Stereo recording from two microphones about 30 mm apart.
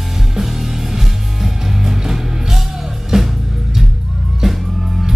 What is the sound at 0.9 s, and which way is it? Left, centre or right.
Music, centre.